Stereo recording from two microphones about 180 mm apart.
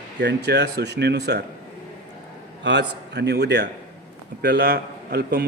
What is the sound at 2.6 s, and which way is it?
A man's voice, 70° right (ahead or behind).